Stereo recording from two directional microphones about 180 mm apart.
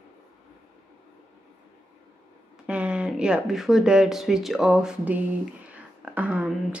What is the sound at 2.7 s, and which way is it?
Speech, 5° right (ahead or behind).